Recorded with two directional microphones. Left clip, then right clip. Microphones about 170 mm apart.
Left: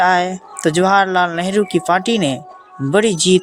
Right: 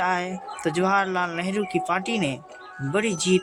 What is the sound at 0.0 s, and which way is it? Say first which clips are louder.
Speech: left 11 dB; 40° left (ahead or behind).